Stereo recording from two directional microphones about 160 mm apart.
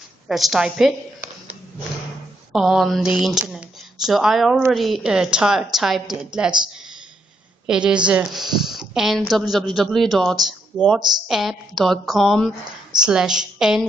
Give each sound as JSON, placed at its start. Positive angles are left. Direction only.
{"t": 0.3, "sound": "a woman's voice", "side_deg": 0}
{"t": 2.5, "sound": "a woman's voice", "side_deg": 0}
{"t": 7.6, "sound": "a woman's voice", "side_deg": -5}